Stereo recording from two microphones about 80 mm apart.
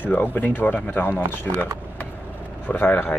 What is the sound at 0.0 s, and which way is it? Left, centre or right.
Speech, left.